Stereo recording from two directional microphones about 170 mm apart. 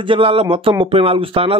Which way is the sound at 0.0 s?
30° right (ahead or behind).